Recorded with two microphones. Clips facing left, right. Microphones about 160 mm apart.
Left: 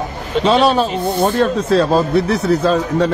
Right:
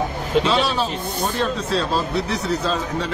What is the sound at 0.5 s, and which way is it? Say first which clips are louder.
Speech: left 7 dB; 45° left (ahead or behind).